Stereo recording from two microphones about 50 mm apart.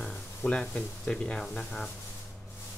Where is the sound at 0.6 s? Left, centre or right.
Centre.